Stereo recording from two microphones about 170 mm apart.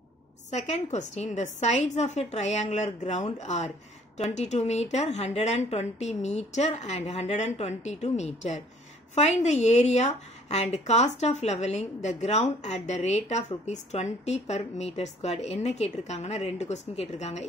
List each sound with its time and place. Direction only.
0.5 s a woman's voice: 40° left (ahead or behind)